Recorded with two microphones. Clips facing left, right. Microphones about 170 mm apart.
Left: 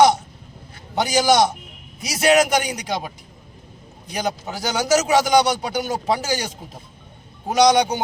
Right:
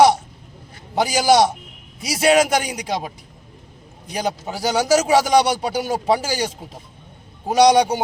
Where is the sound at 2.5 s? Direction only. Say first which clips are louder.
Even; 30° right (ahead or behind).